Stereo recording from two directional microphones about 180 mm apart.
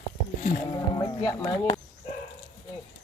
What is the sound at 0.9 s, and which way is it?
Speech, 20° left (ahead or behind).